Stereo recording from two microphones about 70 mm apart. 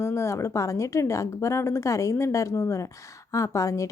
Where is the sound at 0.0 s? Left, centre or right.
Left.